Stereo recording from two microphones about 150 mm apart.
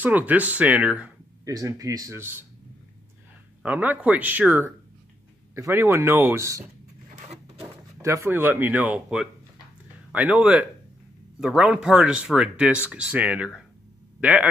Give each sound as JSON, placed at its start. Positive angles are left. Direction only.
{"t": 0.0, "sound": "speech", "side_deg": -10}
{"t": 1.4, "sound": "speech", "side_deg": -20}
{"t": 3.6, "sound": "speech", "side_deg": -10}
{"t": 7.2, "sound": "a sound", "side_deg": -45}
{"t": 8.0, "sound": "speech", "side_deg": -20}